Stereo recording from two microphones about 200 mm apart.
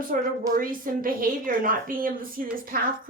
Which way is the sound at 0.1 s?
45° right (ahead or behind).